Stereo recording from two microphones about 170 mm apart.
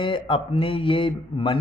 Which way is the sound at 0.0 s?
30° left (ahead or behind).